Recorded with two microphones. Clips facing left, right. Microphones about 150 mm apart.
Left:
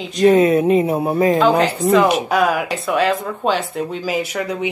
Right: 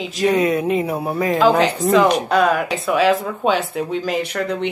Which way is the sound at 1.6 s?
Centre (ahead or behind).